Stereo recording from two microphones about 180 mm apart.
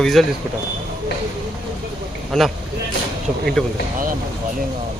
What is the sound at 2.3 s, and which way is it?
Speech, centre (ahead or behind).